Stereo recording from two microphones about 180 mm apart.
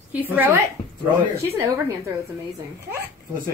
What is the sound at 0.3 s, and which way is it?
A child's voice, 10° right (ahead or behind).